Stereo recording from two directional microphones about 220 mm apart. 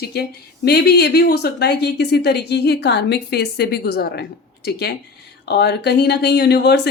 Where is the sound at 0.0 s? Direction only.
45° left (ahead or behind).